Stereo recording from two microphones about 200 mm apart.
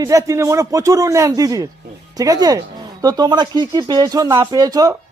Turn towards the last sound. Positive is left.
turn(degrees=-20)  # may be behind; listen again after turning